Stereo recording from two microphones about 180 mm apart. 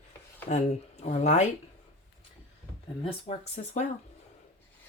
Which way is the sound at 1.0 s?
40° left (ahead or behind).